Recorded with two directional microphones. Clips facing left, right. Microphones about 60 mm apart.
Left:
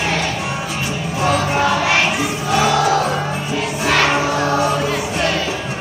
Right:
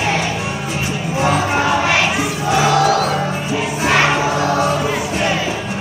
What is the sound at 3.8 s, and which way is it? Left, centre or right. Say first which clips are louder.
Choir: right 1 dB; centre.